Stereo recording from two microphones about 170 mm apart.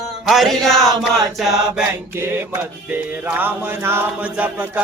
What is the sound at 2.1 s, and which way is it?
Music, 15° right (ahead or behind).